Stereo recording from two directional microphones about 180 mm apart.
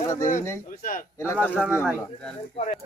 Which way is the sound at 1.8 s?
5° left (ahead or behind).